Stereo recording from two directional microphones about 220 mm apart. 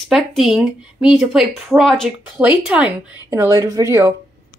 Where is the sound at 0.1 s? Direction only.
Centre (ahead or behind).